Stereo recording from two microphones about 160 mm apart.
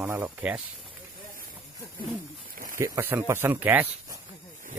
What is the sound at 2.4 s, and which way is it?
Snake, 60° right (ahead or behind).